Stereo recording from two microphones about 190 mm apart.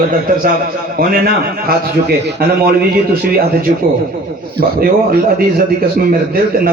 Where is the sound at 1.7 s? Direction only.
55° right (ahead or behind).